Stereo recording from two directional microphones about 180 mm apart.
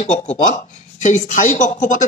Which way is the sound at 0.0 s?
40° left (ahead or behind).